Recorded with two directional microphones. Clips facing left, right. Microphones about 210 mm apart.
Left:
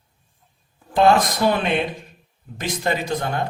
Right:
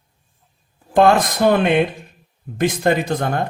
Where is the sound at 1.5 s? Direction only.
55° right (ahead or behind).